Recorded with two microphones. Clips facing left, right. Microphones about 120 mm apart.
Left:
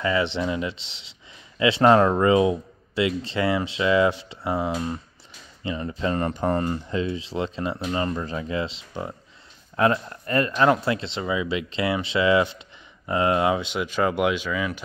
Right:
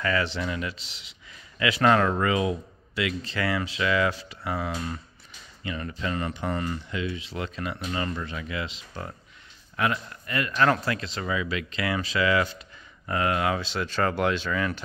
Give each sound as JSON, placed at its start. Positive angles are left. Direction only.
{"t": 0.0, "sound": "a man's voice", "side_deg": 25}
{"t": 6.1, "sound": "speech", "side_deg": 45}
{"t": 10.5, "sound": "a man's voice", "side_deg": 20}